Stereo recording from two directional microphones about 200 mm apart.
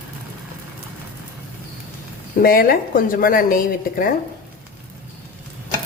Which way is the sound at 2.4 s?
45° left (ahead or behind).